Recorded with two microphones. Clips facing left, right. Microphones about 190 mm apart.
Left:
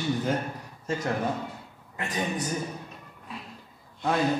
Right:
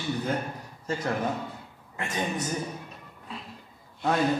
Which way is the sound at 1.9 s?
20° right (ahead or behind).